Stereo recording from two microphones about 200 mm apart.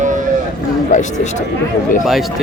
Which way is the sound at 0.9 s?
35° left (ahead or behind).